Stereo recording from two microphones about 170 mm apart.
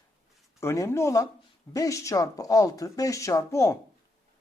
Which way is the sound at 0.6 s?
15° left (ahead or behind).